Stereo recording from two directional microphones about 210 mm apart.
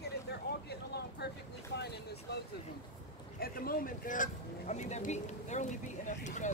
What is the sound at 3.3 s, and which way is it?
Speech, 45° left (ahead or behind).